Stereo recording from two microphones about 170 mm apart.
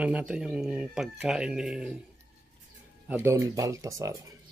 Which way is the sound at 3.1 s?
15° right (ahead or behind).